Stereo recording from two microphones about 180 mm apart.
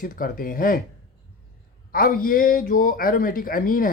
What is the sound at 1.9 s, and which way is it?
Speech, 55° left (ahead or behind).